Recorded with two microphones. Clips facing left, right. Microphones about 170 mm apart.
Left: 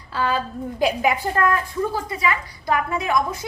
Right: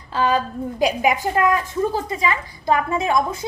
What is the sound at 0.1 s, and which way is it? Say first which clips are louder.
A woman's voice: right 3 dB; 20° right (ahead or behind).